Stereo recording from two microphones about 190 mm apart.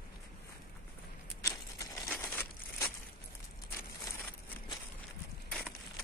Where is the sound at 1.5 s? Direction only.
15° left (ahead or behind).